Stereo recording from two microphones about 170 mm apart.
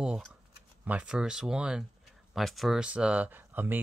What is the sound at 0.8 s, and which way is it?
Speech, 5° right (ahead or behind).